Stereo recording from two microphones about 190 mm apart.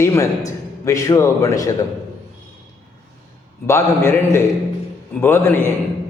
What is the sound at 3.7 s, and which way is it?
A man's voice, 15° left (ahead or behind).